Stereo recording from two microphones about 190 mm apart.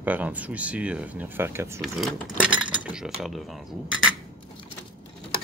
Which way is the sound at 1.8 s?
Centre (ahead or behind).